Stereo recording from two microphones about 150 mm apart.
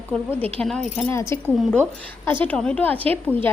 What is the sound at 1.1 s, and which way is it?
A woman's voice, 20° left (ahead or behind).